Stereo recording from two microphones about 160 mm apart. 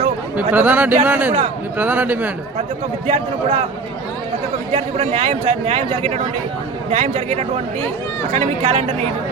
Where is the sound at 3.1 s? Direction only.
45° right (ahead or behind).